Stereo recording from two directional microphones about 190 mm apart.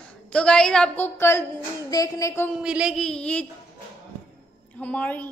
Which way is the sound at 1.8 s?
20° left (ahead or behind).